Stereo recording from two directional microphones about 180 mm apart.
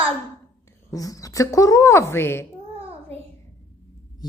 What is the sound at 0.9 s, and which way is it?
A woman's voice, 20° left (ahead or behind).